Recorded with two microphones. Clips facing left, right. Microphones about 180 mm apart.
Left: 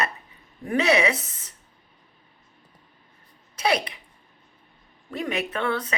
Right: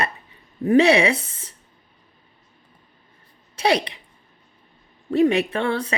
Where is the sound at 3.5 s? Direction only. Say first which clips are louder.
Right 4 dB; 30° right (ahead or behind).